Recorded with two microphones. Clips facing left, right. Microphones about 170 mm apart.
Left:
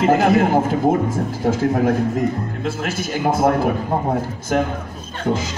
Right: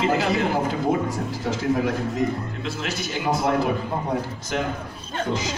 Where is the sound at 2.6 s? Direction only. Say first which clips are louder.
Left 6 dB; 50° left (ahead or behind).